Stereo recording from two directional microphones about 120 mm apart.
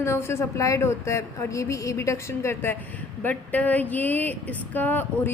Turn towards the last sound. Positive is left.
turn(degrees=15)  # may be behind; listen again after turning